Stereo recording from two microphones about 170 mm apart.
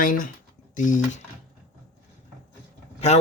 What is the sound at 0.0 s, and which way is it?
Speech, 55° left (ahead or behind).